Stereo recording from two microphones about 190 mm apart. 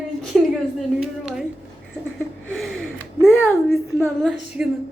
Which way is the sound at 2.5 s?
Centre (ahead or behind).